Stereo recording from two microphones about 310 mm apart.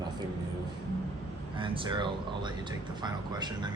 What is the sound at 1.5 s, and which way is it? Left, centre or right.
Speech, centre.